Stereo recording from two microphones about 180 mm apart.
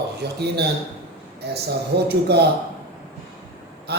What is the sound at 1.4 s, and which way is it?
Speech, 65° right (ahead or behind).